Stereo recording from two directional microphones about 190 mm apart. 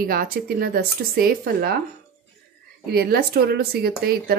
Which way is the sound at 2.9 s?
55° right (ahead or behind).